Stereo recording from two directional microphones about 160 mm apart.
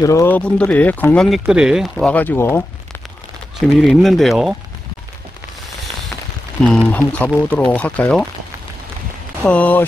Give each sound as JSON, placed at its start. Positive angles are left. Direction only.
{"t": 0.0, "sound": "speech", "side_deg": 20}
{"t": 0.4, "sound": "speech", "side_deg": 10}
{"t": 2.0, "sound": "speech", "side_deg": 10}
{"t": 3.6, "sound": "speech", "side_deg": 0}
{"t": 6.6, "sound": "speech", "side_deg": 10}
{"t": 9.4, "sound": "speech", "side_deg": 10}